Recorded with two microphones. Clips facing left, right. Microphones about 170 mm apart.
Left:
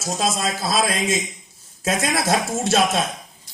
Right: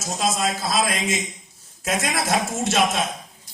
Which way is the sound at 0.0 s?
30° left (ahead or behind).